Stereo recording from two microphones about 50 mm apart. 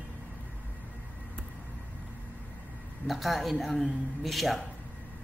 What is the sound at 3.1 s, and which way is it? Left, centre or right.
Speech, centre.